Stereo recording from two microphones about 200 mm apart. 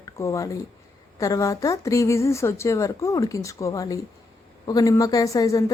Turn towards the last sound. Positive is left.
turn(degrees=20)  # may be behind; listen again after turning